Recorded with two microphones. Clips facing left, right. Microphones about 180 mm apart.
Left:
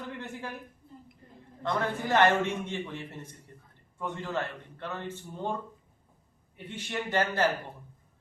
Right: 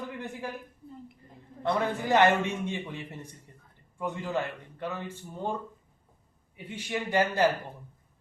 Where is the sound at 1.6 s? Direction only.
15° right (ahead or behind).